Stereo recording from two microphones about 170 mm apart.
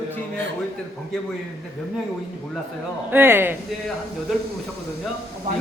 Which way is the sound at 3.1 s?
10° right (ahead or behind).